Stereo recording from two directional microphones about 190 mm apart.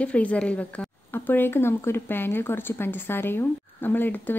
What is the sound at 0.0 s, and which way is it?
Speech, 5° left (ahead or behind).